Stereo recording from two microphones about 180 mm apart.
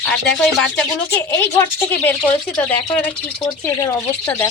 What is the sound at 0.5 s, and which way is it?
Speech, 5° left (ahead or behind).